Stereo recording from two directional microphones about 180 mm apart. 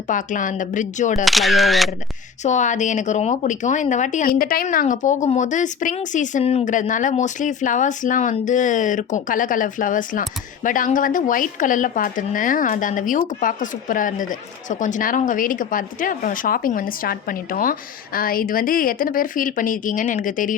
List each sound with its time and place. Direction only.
0.1 s speech: 45° left (ahead or behind)
1.2 s speech: centre (ahead or behind)
2.4 s speech: 40° left (ahead or behind)